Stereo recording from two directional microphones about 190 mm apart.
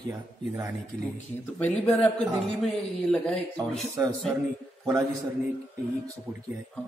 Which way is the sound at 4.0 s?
15° right (ahead or behind).